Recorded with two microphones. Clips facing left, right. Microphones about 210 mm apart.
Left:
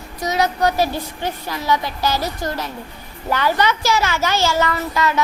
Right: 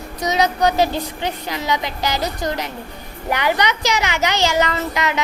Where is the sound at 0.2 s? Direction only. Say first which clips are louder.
Right 1 dB; 20° right (ahead or behind).